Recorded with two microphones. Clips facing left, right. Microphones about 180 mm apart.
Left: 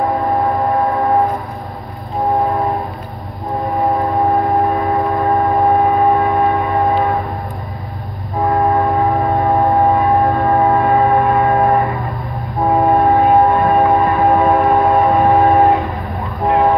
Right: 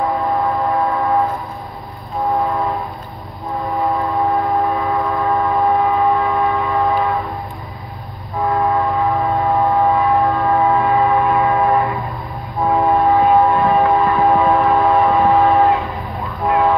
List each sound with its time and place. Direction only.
0.0 s a sound: 35° left (ahead or behind)
3.8 s train: 40° left (ahead or behind)
8.5 s train: 40° left (ahead or behind)
16.4 s vehicle: 40° left (ahead or behind)